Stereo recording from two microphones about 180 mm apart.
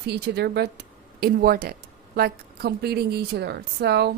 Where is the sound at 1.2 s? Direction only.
55° right (ahead or behind).